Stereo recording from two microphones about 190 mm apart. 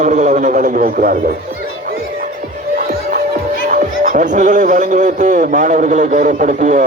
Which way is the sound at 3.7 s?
40° right (ahead or behind).